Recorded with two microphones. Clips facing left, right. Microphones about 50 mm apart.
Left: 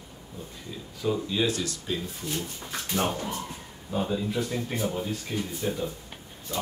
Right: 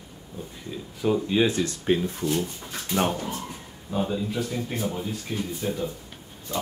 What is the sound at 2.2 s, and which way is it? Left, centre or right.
Speech, centre.